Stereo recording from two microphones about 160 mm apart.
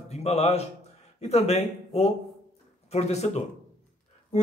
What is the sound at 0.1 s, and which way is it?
A man's voice, 40° left (ahead or behind).